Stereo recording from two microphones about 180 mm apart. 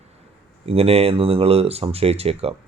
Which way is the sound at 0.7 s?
35° right (ahead or behind).